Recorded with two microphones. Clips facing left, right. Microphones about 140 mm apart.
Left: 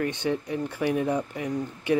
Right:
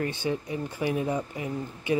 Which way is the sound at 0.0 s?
65° left (ahead or behind).